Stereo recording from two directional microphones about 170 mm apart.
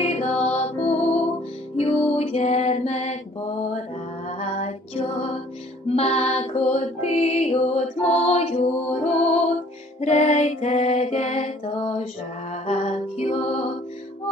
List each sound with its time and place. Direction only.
0.0 s mantra: 40° left (ahead or behind)
1.8 s music: 35° left (ahead or behind)
4.4 s music: 40° left (ahead or behind)